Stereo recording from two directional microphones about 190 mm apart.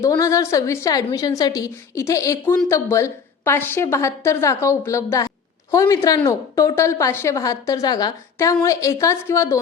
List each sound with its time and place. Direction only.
0.0 s a woman's voice: 15° left (ahead or behind)